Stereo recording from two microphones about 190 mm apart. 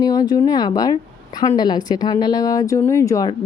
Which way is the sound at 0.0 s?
20° left (ahead or behind).